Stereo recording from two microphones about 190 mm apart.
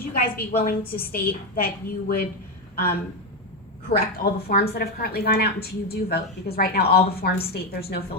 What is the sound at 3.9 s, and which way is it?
A woman's voice, 50° left (ahead or behind).